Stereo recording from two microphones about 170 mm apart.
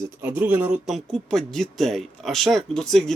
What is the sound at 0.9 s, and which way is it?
Speech, 5° left (ahead or behind).